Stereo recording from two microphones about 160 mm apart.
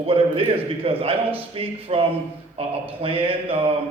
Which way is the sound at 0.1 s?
35° right (ahead or behind).